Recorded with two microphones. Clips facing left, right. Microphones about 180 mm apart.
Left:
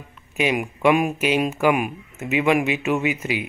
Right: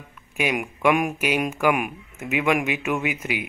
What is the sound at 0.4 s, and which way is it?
Speech, 5° right (ahead or behind).